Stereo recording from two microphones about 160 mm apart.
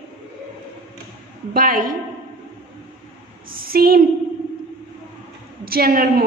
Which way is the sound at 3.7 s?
70° right (ahead or behind).